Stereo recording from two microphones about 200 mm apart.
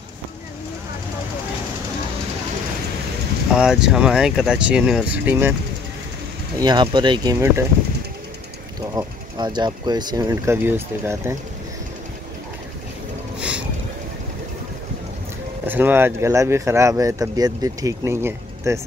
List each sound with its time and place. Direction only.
3.5 s speech: 5° right (ahead or behind)
6.6 s speech: 20° right (ahead or behind)
8.9 s speech: 20° right (ahead or behind)
13.4 s vehicle: 5° right (ahead or behind)
15.6 s speech: 10° right (ahead or behind)